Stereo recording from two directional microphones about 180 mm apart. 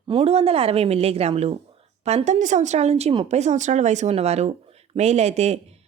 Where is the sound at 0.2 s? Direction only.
35° right (ahead or behind).